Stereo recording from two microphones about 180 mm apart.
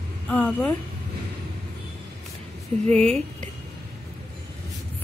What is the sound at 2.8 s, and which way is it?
Speech, 35° right (ahead or behind).